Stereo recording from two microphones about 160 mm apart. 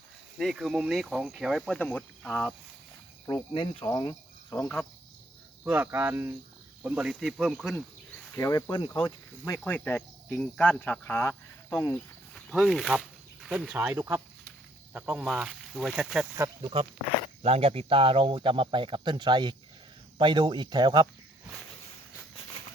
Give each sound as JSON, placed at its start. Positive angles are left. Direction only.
{"t": 0.3, "sound": "speech", "side_deg": 0}
{"t": 3.2, "sound": "speech", "side_deg": 25}
{"t": 3.8, "sound": "cricket", "side_deg": 25}
{"t": 4.5, "sound": "speech", "side_deg": 10}
{"t": 5.6, "sound": "speech", "side_deg": -10}
{"t": 8.4, "sound": "speech", "side_deg": 20}
{"t": 9.5, "sound": "speech", "side_deg": 10}
{"t": 12.3, "sound": "speech", "side_deg": 0}
{"t": 16.6, "sound": "speech", "side_deg": -35}